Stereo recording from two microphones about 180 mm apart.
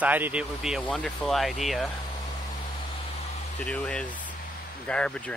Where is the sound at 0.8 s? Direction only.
5° left (ahead or behind).